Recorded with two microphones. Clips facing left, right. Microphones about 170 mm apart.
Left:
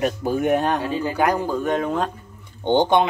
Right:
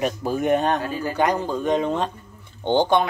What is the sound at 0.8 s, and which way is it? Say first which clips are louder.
Speech: left 3 dB; 25° left (ahead or behind).